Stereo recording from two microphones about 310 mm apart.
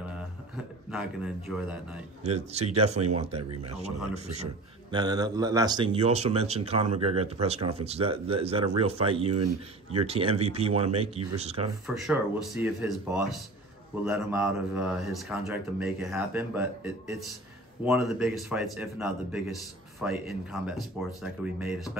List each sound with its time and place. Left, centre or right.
0.9 s a man's voice: centre
2.2 s speech: right
4.9 s speech: centre
11.9 s a man's voice: centre